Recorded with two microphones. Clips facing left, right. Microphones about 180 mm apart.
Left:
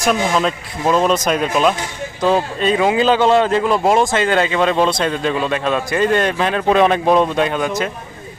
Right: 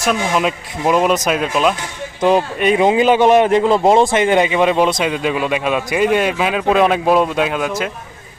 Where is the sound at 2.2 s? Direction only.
15° right (ahead or behind).